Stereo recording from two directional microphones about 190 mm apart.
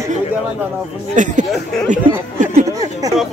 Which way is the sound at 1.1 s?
40° right (ahead or behind).